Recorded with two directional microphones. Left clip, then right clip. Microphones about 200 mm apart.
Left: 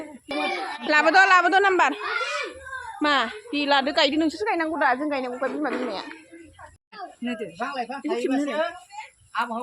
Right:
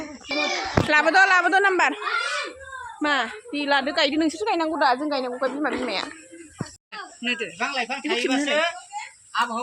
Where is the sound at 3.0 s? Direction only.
25° left (ahead or behind).